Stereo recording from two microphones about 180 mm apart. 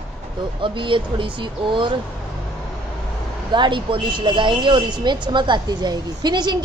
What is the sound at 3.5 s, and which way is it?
A woman's voice, 25° right (ahead or behind).